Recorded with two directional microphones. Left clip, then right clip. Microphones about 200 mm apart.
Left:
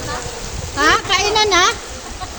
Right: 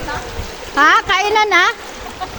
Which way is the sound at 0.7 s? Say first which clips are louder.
Right 3 dB; 20° right (ahead or behind).